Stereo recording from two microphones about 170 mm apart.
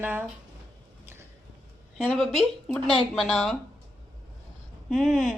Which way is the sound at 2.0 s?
5° right (ahead or behind).